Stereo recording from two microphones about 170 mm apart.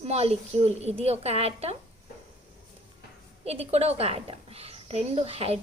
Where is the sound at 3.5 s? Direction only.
40° right (ahead or behind).